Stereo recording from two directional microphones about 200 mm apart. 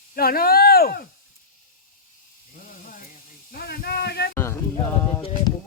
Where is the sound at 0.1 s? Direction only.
50° left (ahead or behind).